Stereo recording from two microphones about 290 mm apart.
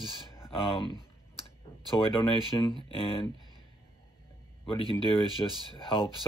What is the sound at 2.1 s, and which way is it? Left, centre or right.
Speech, centre.